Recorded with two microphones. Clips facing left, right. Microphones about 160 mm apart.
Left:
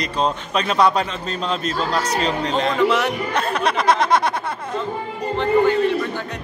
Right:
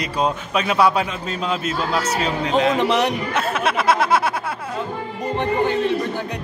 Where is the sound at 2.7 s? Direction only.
20° right (ahead or behind).